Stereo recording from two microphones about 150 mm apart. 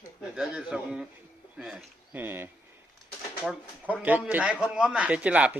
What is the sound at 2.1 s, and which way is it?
Speech, 15° right (ahead or behind).